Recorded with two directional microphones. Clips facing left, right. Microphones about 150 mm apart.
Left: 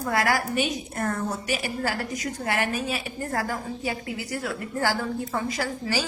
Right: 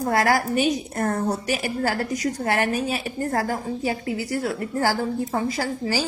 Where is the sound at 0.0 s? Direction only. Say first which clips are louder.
Right 4 dB; 40° right (ahead or behind).